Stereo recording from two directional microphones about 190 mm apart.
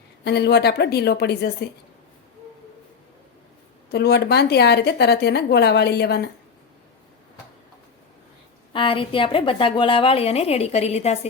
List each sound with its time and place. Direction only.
0.3 s a woman's voice: 60° left (ahead or behind)
3.9 s a woman's voice: 60° left (ahead or behind)
8.7 s a woman's voice: 25° left (ahead or behind)